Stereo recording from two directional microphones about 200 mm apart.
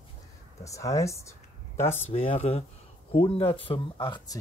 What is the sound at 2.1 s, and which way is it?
Speech, 30° left (ahead or behind).